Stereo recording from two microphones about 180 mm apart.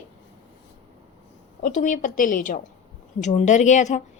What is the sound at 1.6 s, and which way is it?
A woman's voice, 45° left (ahead or behind).